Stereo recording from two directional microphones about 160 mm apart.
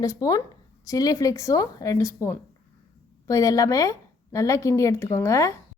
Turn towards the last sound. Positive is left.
turn(degrees=20)  # may be behind; listen again after turning